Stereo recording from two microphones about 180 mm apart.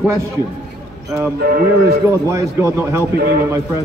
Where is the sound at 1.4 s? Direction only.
60° right (ahead or behind).